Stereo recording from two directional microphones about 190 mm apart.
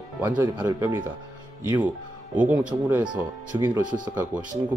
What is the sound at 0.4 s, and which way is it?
Speech, 15° right (ahead or behind).